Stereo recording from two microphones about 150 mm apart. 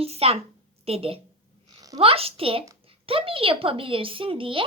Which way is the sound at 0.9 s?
40° right (ahead or behind).